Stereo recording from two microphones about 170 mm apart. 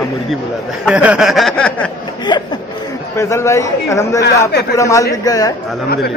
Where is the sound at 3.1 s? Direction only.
15° left (ahead or behind).